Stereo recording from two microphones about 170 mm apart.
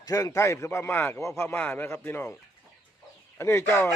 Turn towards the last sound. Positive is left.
turn(degrees=15)  # may be behind; listen again after turning